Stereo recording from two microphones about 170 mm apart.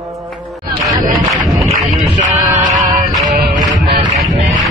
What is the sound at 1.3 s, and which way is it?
Music, centre (ahead or behind).